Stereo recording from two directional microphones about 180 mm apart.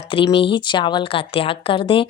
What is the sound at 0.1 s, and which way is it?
Speech, 30° left (ahead or behind).